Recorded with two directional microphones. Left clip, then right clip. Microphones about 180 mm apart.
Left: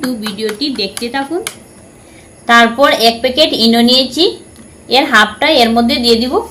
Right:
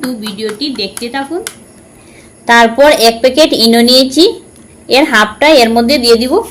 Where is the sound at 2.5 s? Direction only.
45° right (ahead or behind).